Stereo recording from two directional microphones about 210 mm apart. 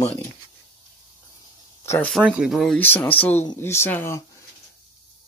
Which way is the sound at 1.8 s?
15° left (ahead or behind).